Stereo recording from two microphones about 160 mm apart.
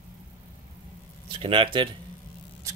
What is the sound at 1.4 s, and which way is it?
Speech, 35° right (ahead or behind).